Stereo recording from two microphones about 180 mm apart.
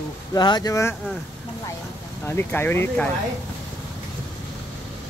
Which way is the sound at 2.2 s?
10° left (ahead or behind).